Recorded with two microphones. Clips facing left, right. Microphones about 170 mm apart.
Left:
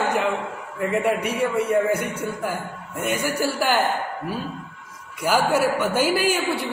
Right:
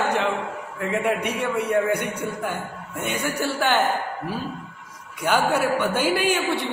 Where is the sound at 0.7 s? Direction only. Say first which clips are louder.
Left 2 dB; 5° left (ahead or behind).